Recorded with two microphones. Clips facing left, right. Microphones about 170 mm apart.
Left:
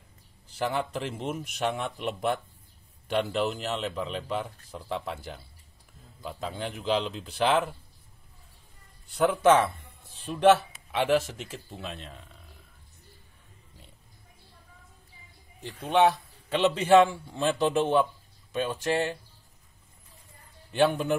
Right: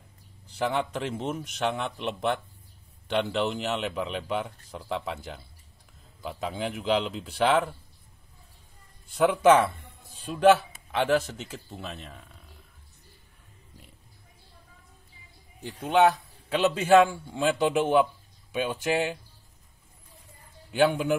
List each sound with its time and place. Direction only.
0.6 s a man's voice: 5° left (ahead or behind)
9.1 s a man's voice: centre (ahead or behind)
15.6 s a man's voice: 10° right (ahead or behind)
20.7 s a man's voice: 5° right (ahead or behind)